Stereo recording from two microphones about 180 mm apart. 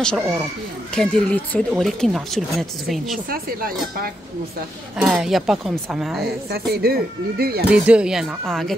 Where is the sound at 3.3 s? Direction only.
55° right (ahead or behind).